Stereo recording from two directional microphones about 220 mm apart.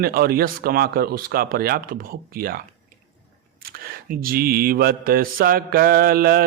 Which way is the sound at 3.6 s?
40° right (ahead or behind).